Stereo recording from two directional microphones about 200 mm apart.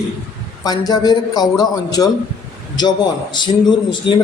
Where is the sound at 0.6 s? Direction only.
20° left (ahead or behind).